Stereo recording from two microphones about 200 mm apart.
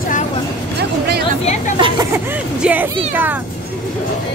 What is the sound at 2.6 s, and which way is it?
Speech, 5° right (ahead or behind).